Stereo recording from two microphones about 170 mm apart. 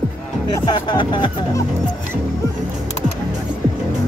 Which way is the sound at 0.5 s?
25° left (ahead or behind).